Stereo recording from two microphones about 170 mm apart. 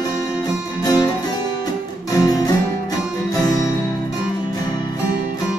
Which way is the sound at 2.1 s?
20° left (ahead or behind).